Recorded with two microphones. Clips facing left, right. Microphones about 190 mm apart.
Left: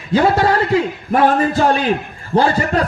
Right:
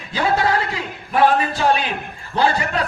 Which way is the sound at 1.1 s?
45° left (ahead or behind).